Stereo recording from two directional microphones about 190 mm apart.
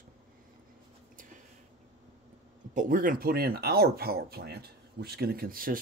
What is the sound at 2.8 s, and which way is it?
Speech, 45° right (ahead or behind).